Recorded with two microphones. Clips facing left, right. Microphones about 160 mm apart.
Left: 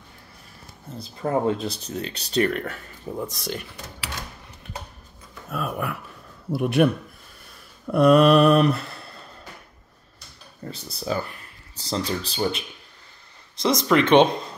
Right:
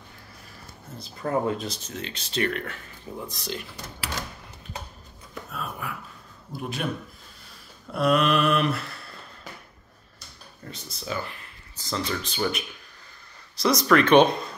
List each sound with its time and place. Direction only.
1.2 s speech: 35° left (ahead or behind)
5.5 s a man's voice: 60° left (ahead or behind)
7.9 s speech: 50° left (ahead or behind)
10.6 s a sound: 35° left (ahead or behind)
11.9 s speech: 35° left (ahead or behind)